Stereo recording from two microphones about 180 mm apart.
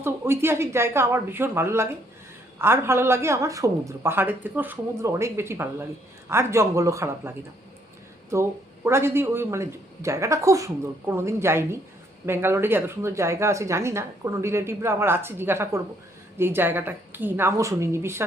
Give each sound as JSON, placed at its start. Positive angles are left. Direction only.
{"t": 0.0, "sound": "a woman's voice", "side_deg": -15}